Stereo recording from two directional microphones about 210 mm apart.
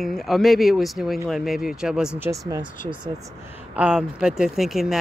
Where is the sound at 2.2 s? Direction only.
15° right (ahead or behind).